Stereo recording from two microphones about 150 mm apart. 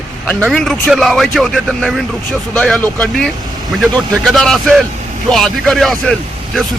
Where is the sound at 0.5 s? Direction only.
Centre (ahead or behind).